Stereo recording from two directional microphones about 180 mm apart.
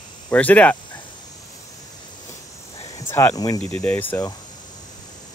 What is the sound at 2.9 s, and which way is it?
Cricket, 15° left (ahead or behind).